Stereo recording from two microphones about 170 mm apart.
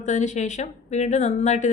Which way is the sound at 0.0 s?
45° left (ahead or behind).